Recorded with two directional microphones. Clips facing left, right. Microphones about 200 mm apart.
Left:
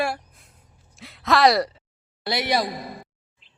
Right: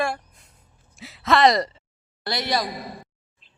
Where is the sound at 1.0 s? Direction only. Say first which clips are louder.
Even; centre (ahead or behind).